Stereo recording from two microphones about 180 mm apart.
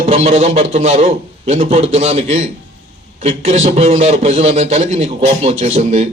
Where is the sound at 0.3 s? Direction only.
35° right (ahead or behind).